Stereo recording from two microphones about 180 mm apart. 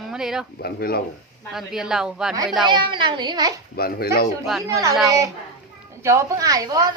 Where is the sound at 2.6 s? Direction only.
25° right (ahead or behind).